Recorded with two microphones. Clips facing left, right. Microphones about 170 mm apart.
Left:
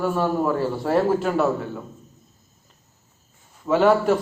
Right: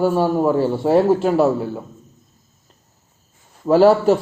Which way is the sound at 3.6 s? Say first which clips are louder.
Right 5 dB; 35° right (ahead or behind).